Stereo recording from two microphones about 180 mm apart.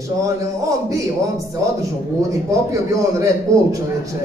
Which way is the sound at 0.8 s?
15° right (ahead or behind).